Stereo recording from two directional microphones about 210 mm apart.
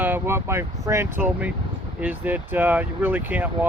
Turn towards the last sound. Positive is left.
turn(degrees=-10)  # may be behind; listen again after turning